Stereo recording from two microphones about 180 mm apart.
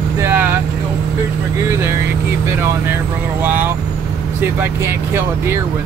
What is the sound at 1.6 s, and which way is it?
Speech, 15° right (ahead or behind).